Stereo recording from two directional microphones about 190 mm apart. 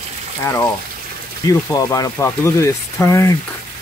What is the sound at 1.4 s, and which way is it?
Speech, 15° left (ahead or behind).